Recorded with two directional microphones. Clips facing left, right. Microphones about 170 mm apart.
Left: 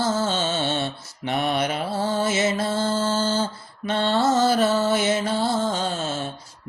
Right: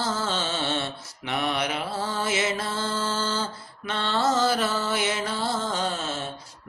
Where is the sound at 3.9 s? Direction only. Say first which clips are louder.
Left 7 dB; 50° left (ahead or behind).